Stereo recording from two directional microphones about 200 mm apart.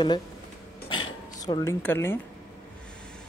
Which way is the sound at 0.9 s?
25° left (ahead or behind).